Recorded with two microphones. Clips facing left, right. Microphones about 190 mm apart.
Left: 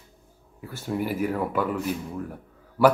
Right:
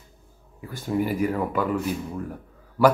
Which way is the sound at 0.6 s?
5° left (ahead or behind).